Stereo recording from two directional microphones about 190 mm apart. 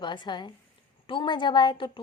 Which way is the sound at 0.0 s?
25° left (ahead or behind).